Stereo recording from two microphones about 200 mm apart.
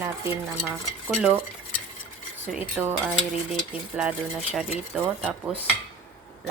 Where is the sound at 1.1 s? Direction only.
5° right (ahead or behind).